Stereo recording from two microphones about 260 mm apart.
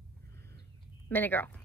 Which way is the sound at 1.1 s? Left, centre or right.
Centre.